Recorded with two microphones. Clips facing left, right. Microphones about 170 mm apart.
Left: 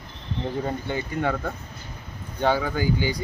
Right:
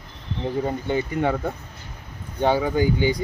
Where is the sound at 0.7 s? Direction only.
15° right (ahead or behind).